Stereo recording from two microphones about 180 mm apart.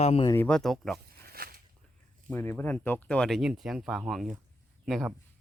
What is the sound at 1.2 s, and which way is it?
Walk, 55° right (ahead or behind).